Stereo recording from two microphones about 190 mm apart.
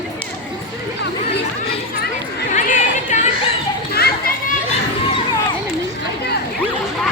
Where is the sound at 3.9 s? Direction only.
55° left (ahead or behind).